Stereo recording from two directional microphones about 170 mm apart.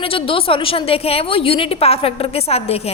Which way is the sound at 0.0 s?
30° left (ahead or behind).